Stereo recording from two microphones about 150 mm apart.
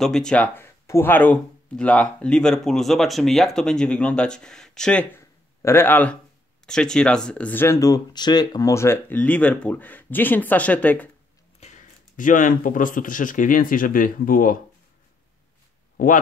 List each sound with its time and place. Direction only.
0.0 s speech: 5° left (ahead or behind)
5.6 s speech: 15° left (ahead or behind)
11.6 s speech: 55° left (ahead or behind)
16.0 s speech: 70° left (ahead or behind)